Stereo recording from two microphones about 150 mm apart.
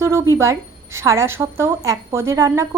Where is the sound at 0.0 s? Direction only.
20° right (ahead or behind).